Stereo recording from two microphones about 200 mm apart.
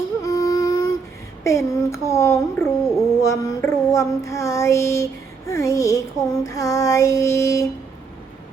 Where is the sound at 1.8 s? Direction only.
15° left (ahead or behind).